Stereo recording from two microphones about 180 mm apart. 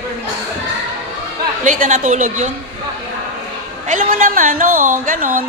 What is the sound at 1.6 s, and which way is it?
Speech, 45° right (ahead or behind).